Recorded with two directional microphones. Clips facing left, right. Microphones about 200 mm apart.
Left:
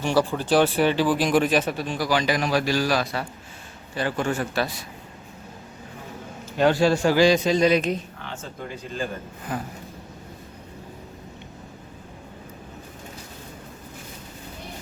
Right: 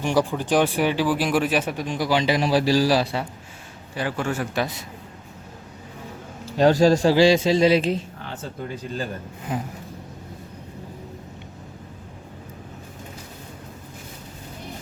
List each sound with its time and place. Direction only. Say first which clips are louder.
0.0 s speech: even; 15° right (ahead or behind)
3.9 s speech: left 1 dB; 10° right (ahead or behind)
4.5 s a man's voice: right 1 dB; 20° right (ahead or behind)
6.6 s a man's voice: right 3 dB; 40° right (ahead or behind)
9.5 s a man's voice: right 2 dB; 20° right (ahead or behind)